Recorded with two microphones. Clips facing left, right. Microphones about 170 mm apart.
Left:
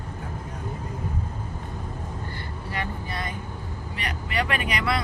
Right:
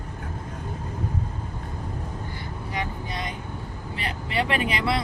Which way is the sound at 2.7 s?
20° right (ahead or behind).